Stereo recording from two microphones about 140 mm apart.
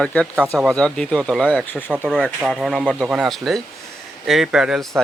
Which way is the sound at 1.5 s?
10° left (ahead or behind).